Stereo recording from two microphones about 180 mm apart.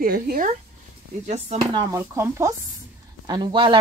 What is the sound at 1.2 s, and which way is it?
Speech, 35° right (ahead or behind).